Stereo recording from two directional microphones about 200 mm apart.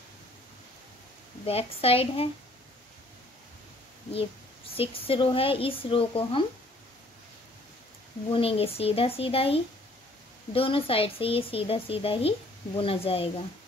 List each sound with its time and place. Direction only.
1.4 s speech: 30° left (ahead or behind)
4.1 s speech: 30° left (ahead or behind)
8.3 s speech: 30° left (ahead or behind)